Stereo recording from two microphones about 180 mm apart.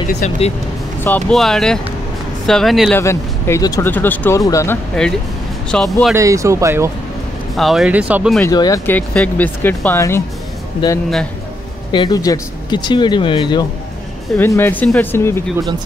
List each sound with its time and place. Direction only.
0.2 s speech: 45° left (ahead or behind)
1.0 s speech: 5° left (ahead or behind)
3.0 s speech: 15° left (ahead or behind)
5.0 s speech: 5° left (ahead or behind)
6.1 s speech: 15° right (ahead or behind)
7.5 s speech: centre (ahead or behind)
8.5 s speech: 20° left (ahead or behind)
11.9 s speech: 25° left (ahead or behind)
14.3 s speech: 10° left (ahead or behind)